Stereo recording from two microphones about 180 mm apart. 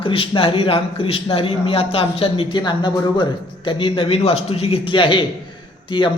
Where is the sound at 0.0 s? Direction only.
30° left (ahead or behind).